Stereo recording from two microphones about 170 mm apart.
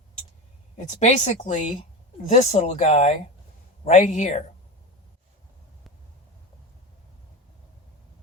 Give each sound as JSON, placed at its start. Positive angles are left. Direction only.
{"t": 0.9, "sound": "speech", "side_deg": 45}